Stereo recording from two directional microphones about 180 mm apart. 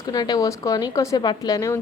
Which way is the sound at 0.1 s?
20° left (ahead or behind).